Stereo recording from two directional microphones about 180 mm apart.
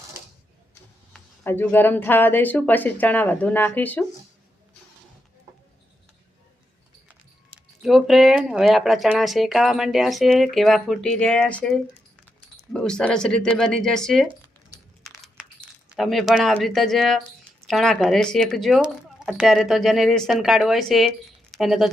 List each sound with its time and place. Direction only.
1.1 s speech: 10° left (ahead or behind)
7.8 s speech: centre (ahead or behind)
15.0 s crushing: centre (ahead or behind)
15.9 s speech: centre (ahead or behind)